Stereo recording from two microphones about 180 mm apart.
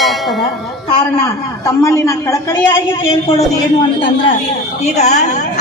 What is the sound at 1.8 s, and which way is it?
A woman's voice, 15° left (ahead or behind).